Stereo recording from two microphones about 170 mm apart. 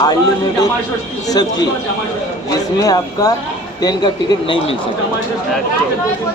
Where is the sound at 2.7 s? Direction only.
20° left (ahead or behind).